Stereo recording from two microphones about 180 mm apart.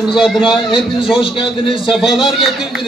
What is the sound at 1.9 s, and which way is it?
Speech, centre (ahead or behind).